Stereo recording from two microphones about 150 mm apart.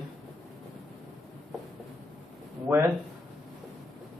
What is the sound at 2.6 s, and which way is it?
Speech, 15° right (ahead or behind).